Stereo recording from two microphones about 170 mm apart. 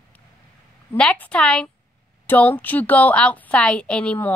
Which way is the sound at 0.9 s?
5° left (ahead or behind).